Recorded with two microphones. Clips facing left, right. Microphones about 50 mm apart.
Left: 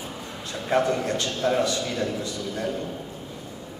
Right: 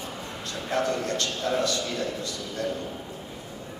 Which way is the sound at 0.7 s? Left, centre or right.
Centre.